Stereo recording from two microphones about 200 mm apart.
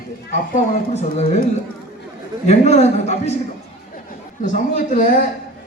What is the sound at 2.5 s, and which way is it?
Speech, 35° left (ahead or behind).